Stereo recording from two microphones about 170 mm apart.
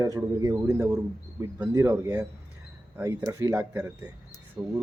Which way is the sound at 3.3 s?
15° right (ahead or behind).